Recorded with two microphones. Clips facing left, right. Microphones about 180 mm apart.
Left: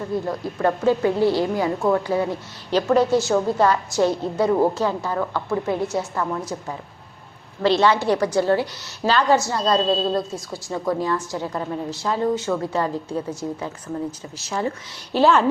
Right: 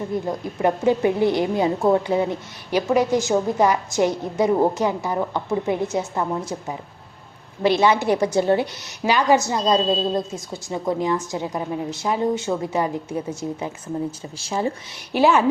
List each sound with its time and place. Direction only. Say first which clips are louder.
0.0 s a woman's voice: even; 20° right (ahead or behind)
7.6 s a woman's voice: even; 15° right (ahead or behind)
14.3 s a woman's voice: right 1 dB; 25° right (ahead or behind)
15.1 s a woman's voice: even; 10° right (ahead or behind)